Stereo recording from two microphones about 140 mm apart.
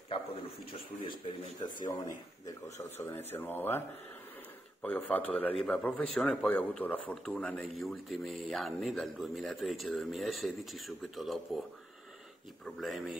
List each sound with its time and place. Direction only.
1.0 s a man's voice: 35° left (ahead or behind); by 3.8 s 15° left (ahead or behind)
4.8 s speech: 10° left (ahead or behind)
12.6 s speech: centre (ahead or behind)